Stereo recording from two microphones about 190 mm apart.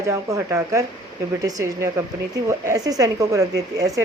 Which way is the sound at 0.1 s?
15° right (ahead or behind).